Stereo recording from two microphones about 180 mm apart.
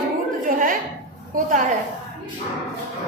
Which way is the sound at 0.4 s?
50° right (ahead or behind).